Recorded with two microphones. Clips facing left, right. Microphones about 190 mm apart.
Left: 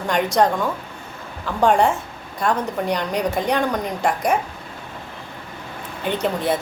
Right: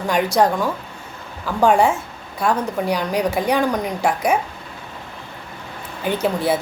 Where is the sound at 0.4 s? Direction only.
5° right (ahead or behind).